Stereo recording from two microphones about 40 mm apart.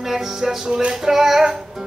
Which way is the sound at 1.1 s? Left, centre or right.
Centre.